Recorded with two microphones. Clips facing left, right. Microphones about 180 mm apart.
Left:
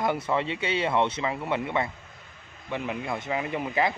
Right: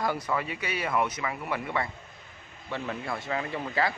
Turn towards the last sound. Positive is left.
turn(degrees=15)  # may be behind; listen again after turning